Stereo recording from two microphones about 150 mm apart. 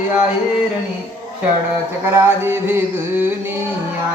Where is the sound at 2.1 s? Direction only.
15° right (ahead or behind).